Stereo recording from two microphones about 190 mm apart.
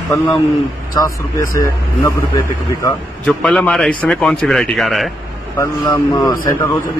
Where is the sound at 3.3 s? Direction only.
5° left (ahead or behind).